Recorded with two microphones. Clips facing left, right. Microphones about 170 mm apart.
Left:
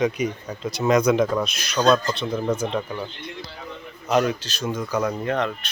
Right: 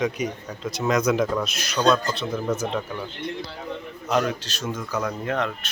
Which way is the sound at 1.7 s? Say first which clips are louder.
Left 2 dB; 10° left (ahead or behind).